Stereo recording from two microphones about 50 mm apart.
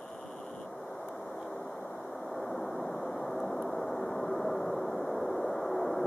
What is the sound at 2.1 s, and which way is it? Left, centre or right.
Vehicle, centre.